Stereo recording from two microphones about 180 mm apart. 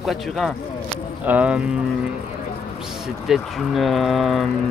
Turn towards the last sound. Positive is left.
turn(degrees=0)  # may be behind; listen again after turning